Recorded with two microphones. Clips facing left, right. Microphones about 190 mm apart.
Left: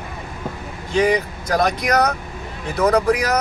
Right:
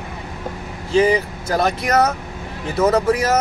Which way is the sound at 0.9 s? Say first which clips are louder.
Right 2 dB; 30° right (ahead or behind).